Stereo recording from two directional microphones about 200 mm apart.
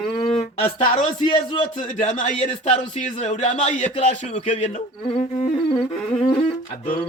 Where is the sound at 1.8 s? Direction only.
40° left (ahead or behind).